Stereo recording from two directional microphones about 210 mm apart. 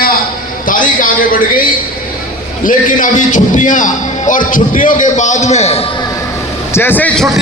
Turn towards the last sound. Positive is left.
turn(degrees=5)  # may be behind; listen again after turning